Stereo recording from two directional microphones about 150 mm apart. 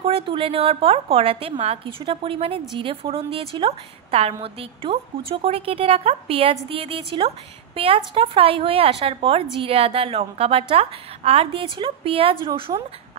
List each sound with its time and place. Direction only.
0.0 s a woman's voice: 40° right (ahead or behind)